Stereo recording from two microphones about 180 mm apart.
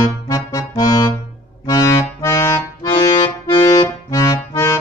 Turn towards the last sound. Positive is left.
turn(degrees=20)  # may be behind; listen again after turning